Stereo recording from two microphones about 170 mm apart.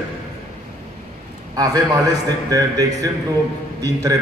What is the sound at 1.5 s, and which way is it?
A man's voice, 20° right (ahead or behind).